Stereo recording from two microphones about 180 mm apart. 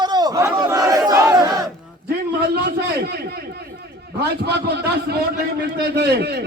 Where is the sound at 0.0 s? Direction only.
20° right (ahead or behind).